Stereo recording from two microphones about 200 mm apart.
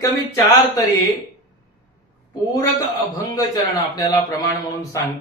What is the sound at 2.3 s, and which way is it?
A woman's voice, 20° left (ahead or behind).